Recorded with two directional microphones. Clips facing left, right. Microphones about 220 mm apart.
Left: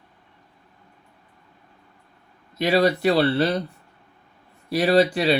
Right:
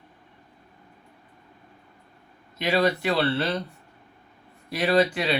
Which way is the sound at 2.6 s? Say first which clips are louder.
Left 4 dB; 35° left (ahead or behind).